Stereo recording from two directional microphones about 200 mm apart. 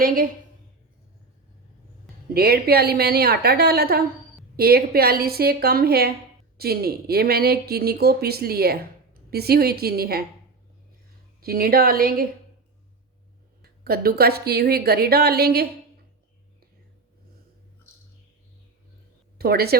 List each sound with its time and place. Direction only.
0.0 s a woman's voice: 45° right (ahead or behind)
2.3 s speech: 50° right (ahead or behind)
11.3 s speech: 45° right (ahead or behind)
13.6 s speech: 50° right (ahead or behind)
19.4 s speech: 50° right (ahead or behind)